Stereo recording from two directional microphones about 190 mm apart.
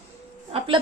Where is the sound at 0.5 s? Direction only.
30° right (ahead or behind).